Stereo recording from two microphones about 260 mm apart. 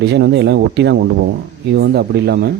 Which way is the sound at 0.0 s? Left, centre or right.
Right.